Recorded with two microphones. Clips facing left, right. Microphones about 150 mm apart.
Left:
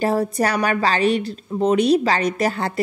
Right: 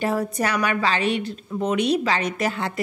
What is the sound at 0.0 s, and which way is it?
A woman's voice, 35° left (ahead or behind).